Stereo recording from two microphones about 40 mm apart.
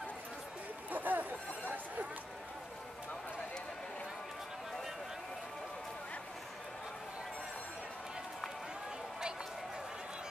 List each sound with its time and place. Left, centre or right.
0.8 s chatter: right